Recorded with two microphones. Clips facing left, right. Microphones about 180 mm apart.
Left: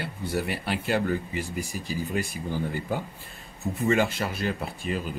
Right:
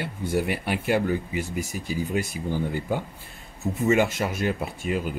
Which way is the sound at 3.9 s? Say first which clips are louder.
Right 3 dB; 10° right (ahead or behind).